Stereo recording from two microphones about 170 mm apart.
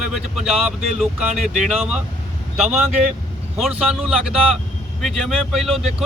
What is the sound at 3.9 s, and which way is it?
Speech, 5° right (ahead or behind).